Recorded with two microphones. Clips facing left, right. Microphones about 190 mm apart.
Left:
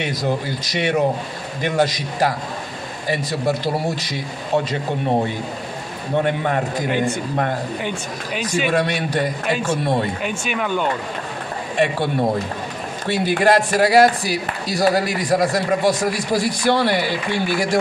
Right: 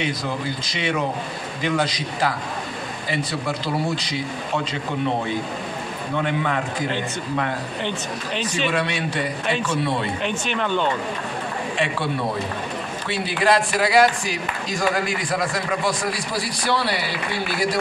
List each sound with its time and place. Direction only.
0.2 s speech: 40° left (ahead or behind)
6.1 s speech: 40° left (ahead or behind)
8.4 s speech: 10° left (ahead or behind)
8.7 s speech: 40° left (ahead or behind)
10.4 s speech: 10° left (ahead or behind)
11.8 s speech: 45° left (ahead or behind)